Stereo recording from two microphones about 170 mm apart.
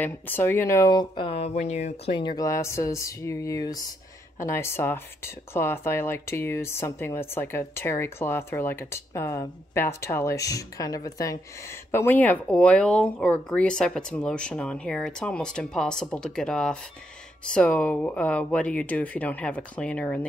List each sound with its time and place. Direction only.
0.0 s speech: 10° left (ahead or behind); by 2.1 s 40° left (ahead or behind)
2.1 s speech: 25° left (ahead or behind); by 20.2 s 10° left (ahead or behind)